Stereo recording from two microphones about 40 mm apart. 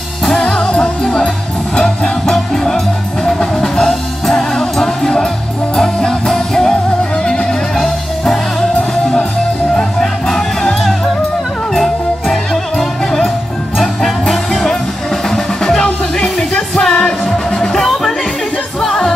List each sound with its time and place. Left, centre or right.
0.4 s music: left
2.3 s music: centre
14.3 s music: centre